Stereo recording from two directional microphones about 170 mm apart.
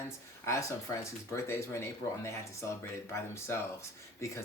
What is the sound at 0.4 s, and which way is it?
Speech, 15° left (ahead or behind).